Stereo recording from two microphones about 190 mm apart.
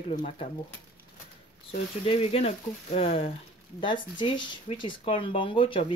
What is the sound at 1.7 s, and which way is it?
Speech, 30° left (ahead or behind).